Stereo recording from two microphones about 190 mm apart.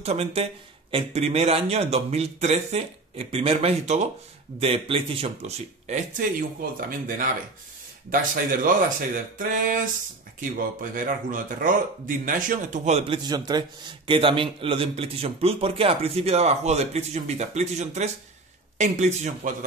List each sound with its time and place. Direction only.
0.0 s a man's voice: 35° right (ahead or behind)
10.8 s a man's voice: 45° right (ahead or behind)